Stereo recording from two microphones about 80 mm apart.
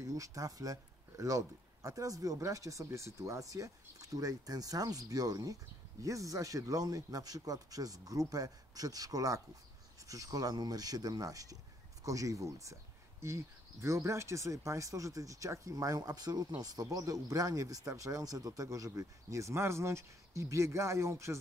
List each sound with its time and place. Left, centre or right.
0.0 s speech: right